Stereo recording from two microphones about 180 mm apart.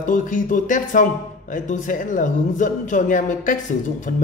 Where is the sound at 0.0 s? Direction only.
45° left (ahead or behind).